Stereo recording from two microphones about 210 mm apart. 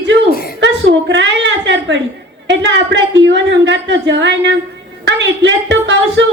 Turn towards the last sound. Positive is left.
turn(degrees=-55)  # may be behind; listen again after turning